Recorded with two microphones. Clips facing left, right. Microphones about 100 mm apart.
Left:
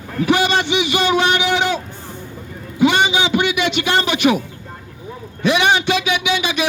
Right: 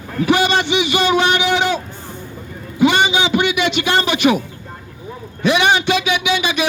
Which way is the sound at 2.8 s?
65° right (ahead or behind).